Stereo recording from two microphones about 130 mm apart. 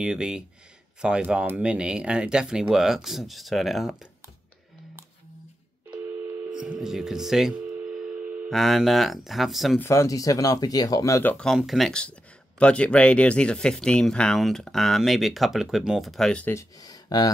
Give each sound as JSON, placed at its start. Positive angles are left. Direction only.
{"t": 0.0, "sound": "speech", "side_deg": -5}
{"t": 5.9, "sound": "telephone dialing", "side_deg": -10}
{"t": 8.5, "sound": "speech", "side_deg": 0}
{"t": 9.8, "sound": "speech", "side_deg": 20}
{"t": 11.3, "sound": "speech", "side_deg": 0}
{"t": 16.5, "sound": "speech", "side_deg": 30}